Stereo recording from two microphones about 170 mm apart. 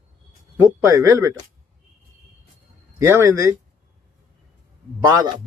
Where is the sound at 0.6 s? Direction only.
15° right (ahead or behind).